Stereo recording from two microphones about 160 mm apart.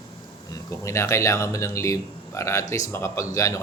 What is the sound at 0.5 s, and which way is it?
Speech, 20° left (ahead or behind).